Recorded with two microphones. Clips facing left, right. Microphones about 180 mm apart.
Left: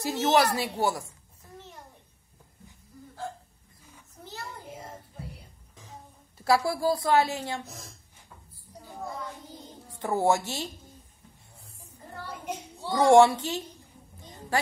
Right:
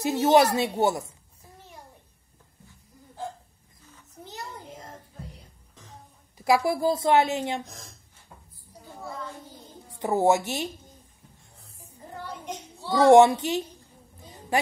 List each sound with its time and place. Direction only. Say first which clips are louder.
0.0 s a woman's voice: right 4 dB; 20° right (ahead or behind)
3.2 s hiccup: right 1 dB; 20° right (ahead or behind)
6.3 s a woman's voice: right 2 dB; 15° right (ahead or behind)
9.8 s speech: right 3 dB; 20° right (ahead or behind)
12.3 s a sound: left 2 dB; 10° left (ahead or behind)
12.9 s a woman's voice: right 3 dB; 20° right (ahead or behind)